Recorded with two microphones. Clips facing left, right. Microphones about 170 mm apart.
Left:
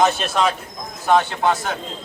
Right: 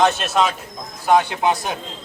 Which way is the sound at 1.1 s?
15° right (ahead or behind).